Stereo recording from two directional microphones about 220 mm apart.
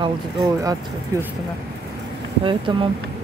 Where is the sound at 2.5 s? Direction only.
20° right (ahead or behind).